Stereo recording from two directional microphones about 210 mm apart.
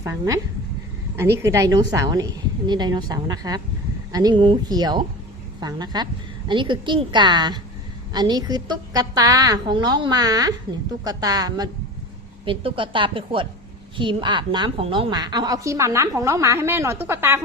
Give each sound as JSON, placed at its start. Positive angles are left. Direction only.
{"t": 1.4, "sound": "a woman's voice", "side_deg": -15}